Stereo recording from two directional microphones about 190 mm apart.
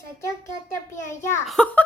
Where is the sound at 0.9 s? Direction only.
15° left (ahead or behind).